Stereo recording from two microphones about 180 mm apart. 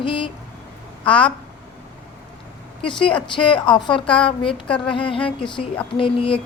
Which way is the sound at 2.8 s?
30° left (ahead or behind).